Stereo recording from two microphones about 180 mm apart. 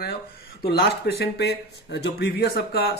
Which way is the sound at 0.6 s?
60° left (ahead or behind).